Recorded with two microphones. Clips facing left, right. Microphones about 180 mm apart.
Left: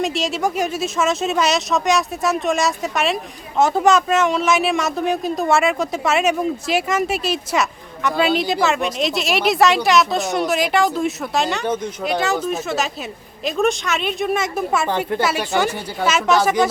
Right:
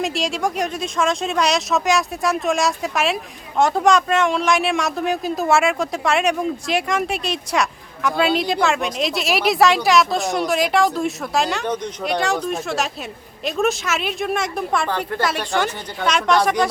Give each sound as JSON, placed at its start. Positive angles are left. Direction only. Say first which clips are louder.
{"t": 0.0, "sound": "speech", "louder": "left 1 dB", "side_deg": 0}
{"t": 14.8, "sound": "speech", "louder": "left 3 dB", "side_deg": 20}
{"t": 15.2, "sound": "speech", "louder": "even", "side_deg": 5}